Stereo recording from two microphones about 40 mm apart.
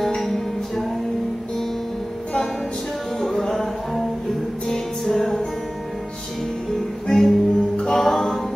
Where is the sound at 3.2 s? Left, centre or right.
Centre.